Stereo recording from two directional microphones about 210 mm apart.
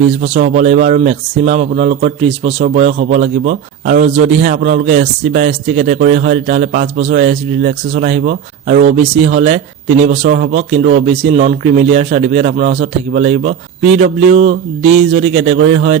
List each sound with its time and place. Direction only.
0.3 s a man's voice: 35° right (ahead or behind)